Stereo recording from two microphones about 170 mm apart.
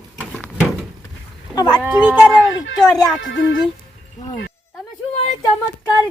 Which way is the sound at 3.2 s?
90° left.